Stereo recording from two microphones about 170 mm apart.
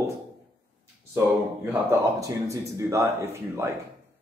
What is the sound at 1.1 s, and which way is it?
Speech, 15° right (ahead or behind).